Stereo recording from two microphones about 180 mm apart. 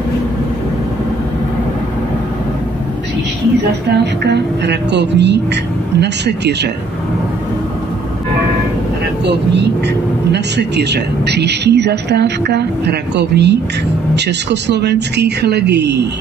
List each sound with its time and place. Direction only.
3.9 s speech: 70° right (ahead or behind)
9.2 s speech: 75° right (ahead or behind)